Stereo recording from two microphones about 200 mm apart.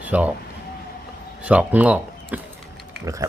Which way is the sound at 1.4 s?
5° right (ahead or behind).